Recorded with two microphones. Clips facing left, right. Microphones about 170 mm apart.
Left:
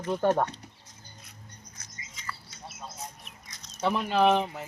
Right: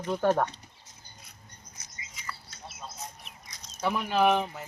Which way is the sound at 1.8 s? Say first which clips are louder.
Right 3 dB; 10° right (ahead or behind).